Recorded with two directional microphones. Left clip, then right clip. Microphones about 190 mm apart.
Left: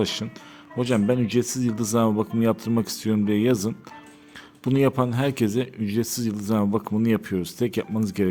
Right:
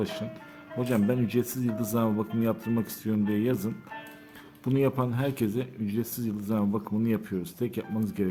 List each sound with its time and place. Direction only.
0.0 s speech: 35° left (ahead or behind)